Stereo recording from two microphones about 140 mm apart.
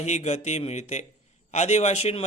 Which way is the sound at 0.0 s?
55° left (ahead or behind).